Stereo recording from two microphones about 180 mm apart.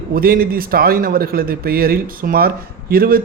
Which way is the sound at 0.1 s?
55° right (ahead or behind).